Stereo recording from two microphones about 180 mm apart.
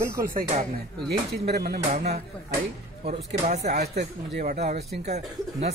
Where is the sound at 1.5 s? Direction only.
60° right (ahead or behind).